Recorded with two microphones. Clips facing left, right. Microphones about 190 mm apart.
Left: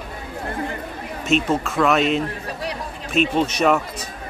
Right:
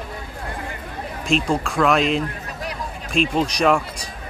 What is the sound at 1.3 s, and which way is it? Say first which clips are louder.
Speech: left 1 dB; 5° left (ahead or behind).